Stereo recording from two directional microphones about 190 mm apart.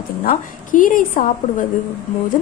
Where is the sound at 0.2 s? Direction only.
45° left (ahead or behind).